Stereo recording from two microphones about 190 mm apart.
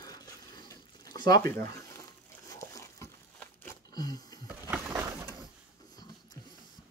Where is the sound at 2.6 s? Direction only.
15° left (ahead or behind).